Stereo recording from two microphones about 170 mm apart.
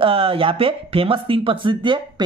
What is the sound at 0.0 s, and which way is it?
Speech, 35° right (ahead or behind).